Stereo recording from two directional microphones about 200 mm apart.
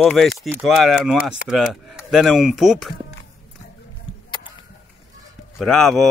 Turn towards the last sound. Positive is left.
turn(degrees=0)  # may be behind; listen again after turning